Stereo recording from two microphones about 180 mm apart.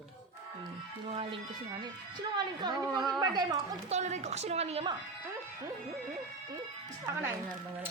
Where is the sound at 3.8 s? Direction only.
40° right (ahead or behind).